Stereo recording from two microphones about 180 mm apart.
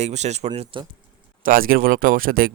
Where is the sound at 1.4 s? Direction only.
50° right (ahead or behind).